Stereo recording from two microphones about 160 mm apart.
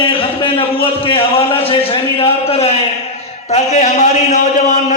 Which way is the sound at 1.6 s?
35° left (ahead or behind).